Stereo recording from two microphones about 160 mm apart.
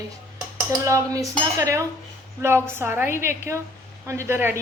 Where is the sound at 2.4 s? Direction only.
15° right (ahead or behind).